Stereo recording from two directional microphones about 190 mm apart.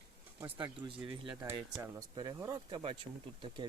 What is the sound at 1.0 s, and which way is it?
Speech, 25° right (ahead or behind).